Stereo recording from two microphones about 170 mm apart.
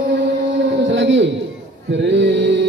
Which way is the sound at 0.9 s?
90° right.